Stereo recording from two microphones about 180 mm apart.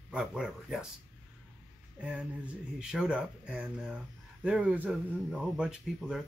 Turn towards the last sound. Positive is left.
turn(degrees=-5)  # may be behind; listen again after turning